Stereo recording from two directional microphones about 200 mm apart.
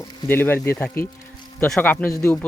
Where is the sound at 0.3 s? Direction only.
10° left (ahead or behind).